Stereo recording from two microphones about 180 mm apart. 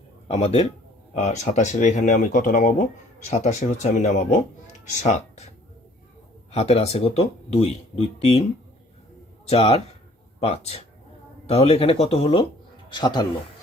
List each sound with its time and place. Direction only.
0.3 s speech: 35° left (ahead or behind)
9.5 s speech: 35° left (ahead or behind)